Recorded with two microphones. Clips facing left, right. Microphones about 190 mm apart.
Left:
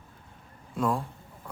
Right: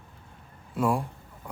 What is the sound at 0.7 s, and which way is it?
Speech, 10° right (ahead or behind).